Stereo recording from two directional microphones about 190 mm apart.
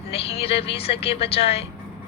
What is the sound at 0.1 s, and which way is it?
Speech, 30° left (ahead or behind).